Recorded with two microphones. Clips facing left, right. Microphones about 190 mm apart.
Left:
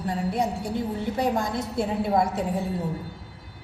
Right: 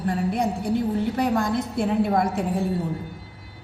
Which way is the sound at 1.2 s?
55° right (ahead or behind).